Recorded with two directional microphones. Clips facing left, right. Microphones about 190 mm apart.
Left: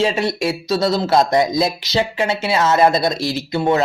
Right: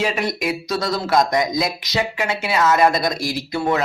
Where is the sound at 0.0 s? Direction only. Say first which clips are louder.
Left 4 dB; 30° left (ahead or behind).